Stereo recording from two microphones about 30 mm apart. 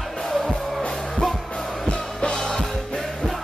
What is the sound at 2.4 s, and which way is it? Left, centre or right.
Music, centre.